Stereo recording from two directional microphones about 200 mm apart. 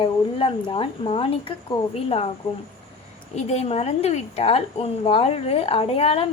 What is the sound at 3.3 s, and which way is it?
A woman's voice, 35° left (ahead or behind).